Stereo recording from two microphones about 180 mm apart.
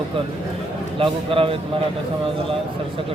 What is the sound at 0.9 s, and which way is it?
Speech, 30° right (ahead or behind).